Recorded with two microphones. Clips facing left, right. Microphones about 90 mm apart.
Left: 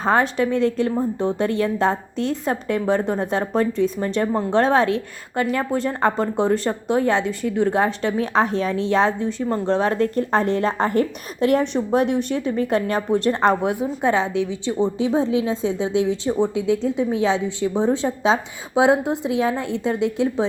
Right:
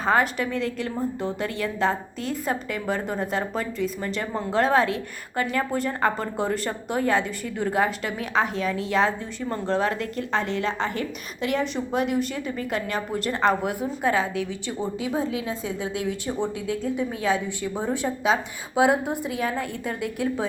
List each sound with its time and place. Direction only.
0.0 s a woman's voice: 30° left (ahead or behind)